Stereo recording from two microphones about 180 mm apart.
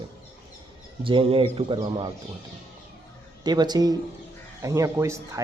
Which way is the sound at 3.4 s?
25° right (ahead or behind).